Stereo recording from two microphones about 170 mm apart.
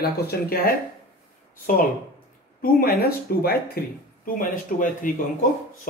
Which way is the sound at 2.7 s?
65° left (ahead or behind).